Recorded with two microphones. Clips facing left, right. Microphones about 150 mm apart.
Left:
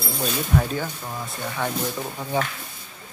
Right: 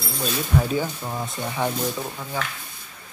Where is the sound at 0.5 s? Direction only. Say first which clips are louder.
Right 3 dB; 10° right (ahead or behind).